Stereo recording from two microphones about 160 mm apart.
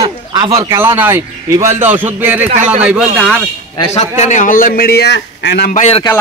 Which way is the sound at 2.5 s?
50° right (ahead or behind).